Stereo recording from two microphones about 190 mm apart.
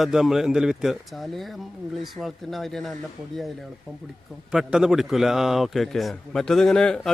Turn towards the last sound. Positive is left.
turn(degrees=5)  # may be behind; listen again after turning